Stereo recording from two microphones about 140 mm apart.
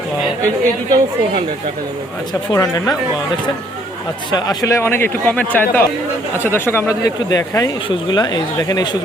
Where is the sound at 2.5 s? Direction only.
20° left (ahead or behind).